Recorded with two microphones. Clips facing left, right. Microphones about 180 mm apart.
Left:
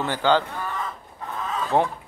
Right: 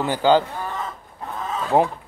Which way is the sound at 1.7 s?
10° right (ahead or behind).